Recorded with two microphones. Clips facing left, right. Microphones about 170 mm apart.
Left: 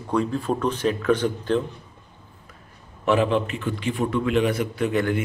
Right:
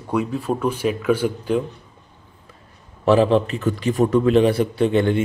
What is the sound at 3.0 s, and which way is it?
A man's voice, 35° right (ahead or behind).